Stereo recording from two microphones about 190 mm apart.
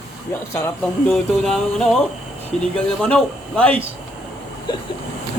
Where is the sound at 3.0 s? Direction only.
5° left (ahead or behind).